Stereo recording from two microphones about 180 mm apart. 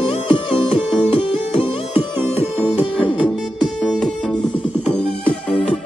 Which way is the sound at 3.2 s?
Centre (ahead or behind).